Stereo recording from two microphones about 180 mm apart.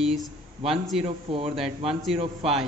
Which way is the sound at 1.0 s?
35° right (ahead or behind).